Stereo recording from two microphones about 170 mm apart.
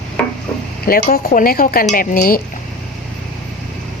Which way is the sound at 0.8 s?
60° left (ahead or behind).